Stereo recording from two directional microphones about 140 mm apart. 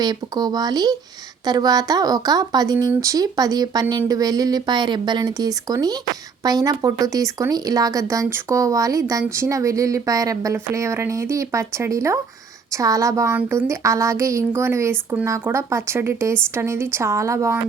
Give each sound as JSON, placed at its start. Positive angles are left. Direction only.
{"t": 0.0, "sound": "speech", "side_deg": -30}